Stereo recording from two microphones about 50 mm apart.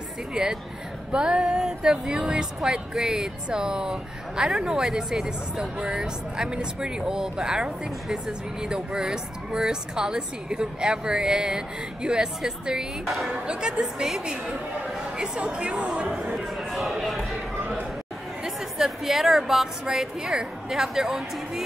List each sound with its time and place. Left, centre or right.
0.3 s speech: centre
13.0 s speech: centre
13.3 s speech: centre
15.1 s speech: centre
16.1 s speech: centre
16.4 s speech: centre
18.4 s a woman's voice: centre